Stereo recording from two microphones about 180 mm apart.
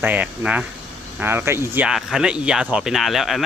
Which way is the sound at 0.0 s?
10° right (ahead or behind).